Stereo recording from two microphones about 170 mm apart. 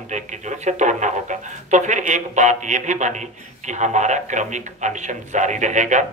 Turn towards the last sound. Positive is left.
turn(degrees=-45)  # may be behind; listen again after turning